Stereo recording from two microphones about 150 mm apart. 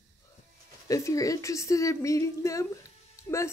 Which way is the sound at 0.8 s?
20° left (ahead or behind).